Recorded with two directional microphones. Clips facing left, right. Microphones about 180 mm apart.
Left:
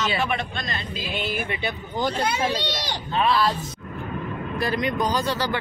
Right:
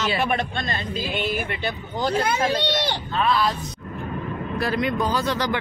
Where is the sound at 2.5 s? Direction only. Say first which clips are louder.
Right 5 dB; 60° right (ahead or behind).